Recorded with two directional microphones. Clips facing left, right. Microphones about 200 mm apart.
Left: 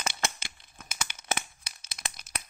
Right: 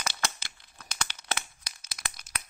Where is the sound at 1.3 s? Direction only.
25° left (ahead or behind).